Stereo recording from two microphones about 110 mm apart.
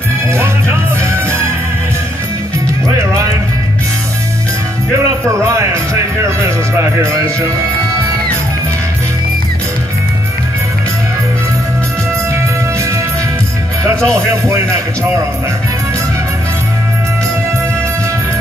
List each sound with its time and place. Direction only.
0.3 s speech: 25° right (ahead or behind)
6.2 s speech: 25° right (ahead or behind)
14.0 s speech: 25° right (ahead or behind)